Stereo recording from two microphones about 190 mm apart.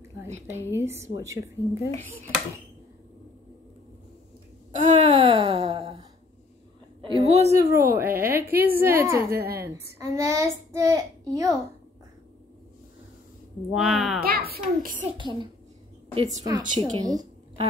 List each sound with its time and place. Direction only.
0.7 s a woman's voice: 15° right (ahead or behind)
1.9 s speech: 10° left (ahead or behind)
4.7 s speech: 35° right (ahead or behind)
7.0 s a sound: 30° right (ahead or behind)
7.4 s a sound: 15° right (ahead or behind)
8.5 s a child's voice: 55° right (ahead or behind)
8.7 s a woman's voice: 15° right (ahead or behind)
9.3 s a woman's voice: 55° right (ahead or behind)
9.9 s a child's voice: 15° right (ahead or behind)
13.7 s speech: centre (ahead or behind)
14.2 s a child's voice: 50° right (ahead or behind)
15.0 s a child's voice: 25° right (ahead or behind)
16.2 s speech: 35° right (ahead or behind)
17.0 s a sound: 20° right (ahead or behind)